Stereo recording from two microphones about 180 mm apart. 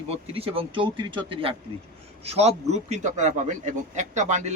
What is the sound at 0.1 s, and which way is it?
A man's voice, 30° right (ahead or behind).